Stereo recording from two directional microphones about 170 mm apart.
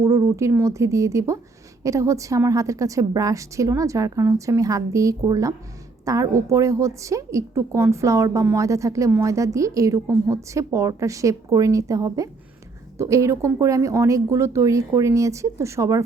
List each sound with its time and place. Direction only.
0.0 s a woman's voice: 15° right (ahead or behind)